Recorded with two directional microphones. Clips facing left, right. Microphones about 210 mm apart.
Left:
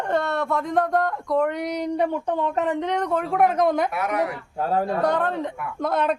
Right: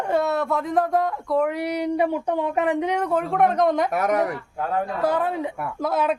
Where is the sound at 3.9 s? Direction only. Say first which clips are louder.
Right 3 dB; 45° right (ahead or behind).